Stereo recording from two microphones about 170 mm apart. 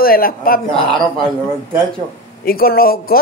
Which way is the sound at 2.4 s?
60° left (ahead or behind).